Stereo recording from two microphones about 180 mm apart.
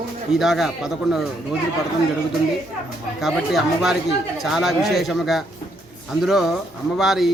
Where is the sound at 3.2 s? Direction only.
Centre (ahead or behind).